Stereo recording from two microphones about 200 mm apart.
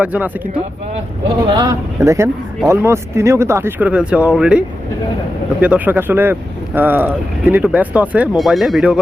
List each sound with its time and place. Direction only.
0.0 s speech: 10° right (ahead or behind)
1.5 s speech: 15° right (ahead or behind)
5.6 s speech: 10° right (ahead or behind)